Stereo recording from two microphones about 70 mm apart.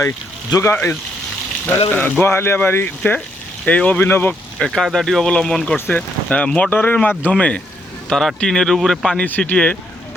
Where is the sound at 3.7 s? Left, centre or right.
Centre.